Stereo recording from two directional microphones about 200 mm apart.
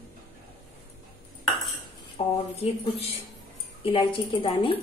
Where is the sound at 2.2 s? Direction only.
30° left (ahead or behind).